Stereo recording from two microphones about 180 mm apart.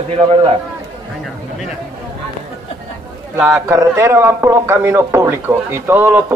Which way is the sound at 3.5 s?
15° right (ahead or behind).